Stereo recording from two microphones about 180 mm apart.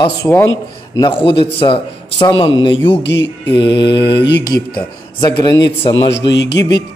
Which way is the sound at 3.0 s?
75° left (ahead or behind).